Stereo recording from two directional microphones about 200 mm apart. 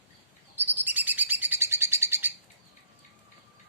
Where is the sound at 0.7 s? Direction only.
10° right (ahead or behind).